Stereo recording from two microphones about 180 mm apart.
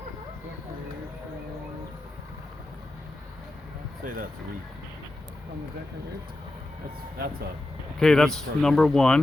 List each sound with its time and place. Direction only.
4.0 s speech: 50° right (ahead or behind)
7.9 s speech: 5° left (ahead or behind)